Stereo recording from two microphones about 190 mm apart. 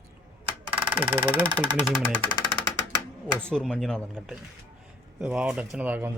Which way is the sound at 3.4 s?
5° left (ahead or behind).